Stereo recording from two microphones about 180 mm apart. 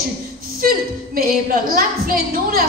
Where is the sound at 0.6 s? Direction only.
55° right (ahead or behind).